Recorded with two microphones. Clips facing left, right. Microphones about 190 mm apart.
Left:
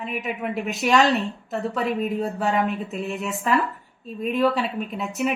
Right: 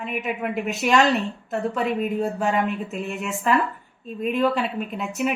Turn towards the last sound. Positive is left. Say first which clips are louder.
# even
turn(degrees=0)  # may be behind; listen again after turning